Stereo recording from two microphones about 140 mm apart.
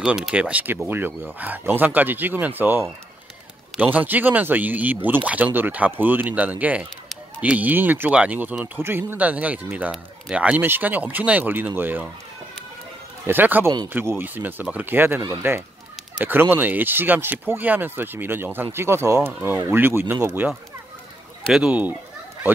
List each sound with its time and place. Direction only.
0.0 s speech: 5° right (ahead or behind)
13.3 s speech: 15° right (ahead or behind)
21.5 s speech: 5° right (ahead or behind)